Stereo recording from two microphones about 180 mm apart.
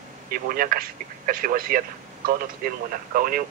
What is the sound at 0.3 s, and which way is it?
Speech, 55° right (ahead or behind).